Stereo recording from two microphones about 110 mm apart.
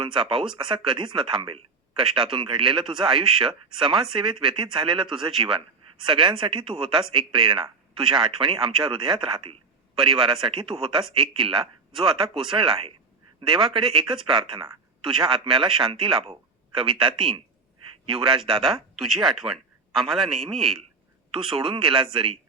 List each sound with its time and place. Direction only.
0.0 s speech: 50° right (ahead or behind)
18.9 s a man's voice: centre (ahead or behind)
20.5 s speech: 50° right (ahead or behind)